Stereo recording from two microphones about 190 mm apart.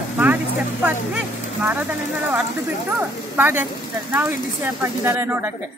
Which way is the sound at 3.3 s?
10° right (ahead or behind).